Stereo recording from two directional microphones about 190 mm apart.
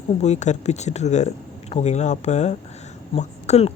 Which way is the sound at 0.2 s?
35° left (ahead or behind).